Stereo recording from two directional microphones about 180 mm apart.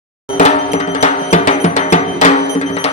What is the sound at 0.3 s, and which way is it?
Music, 40° left (ahead or behind).